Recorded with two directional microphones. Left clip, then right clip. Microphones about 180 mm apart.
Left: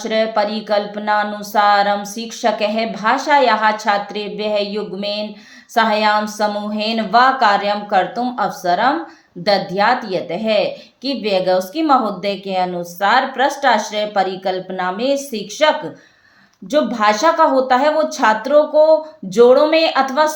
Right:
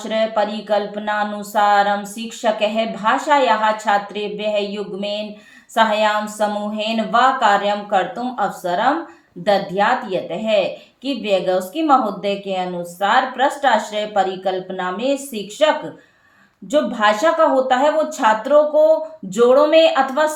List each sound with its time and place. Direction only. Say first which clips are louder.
0.0 s a woman's voice: left 2 dB; 40° left (ahead or behind)
16.7 s a woman's voice: left 1 dB; 40° left (ahead or behind)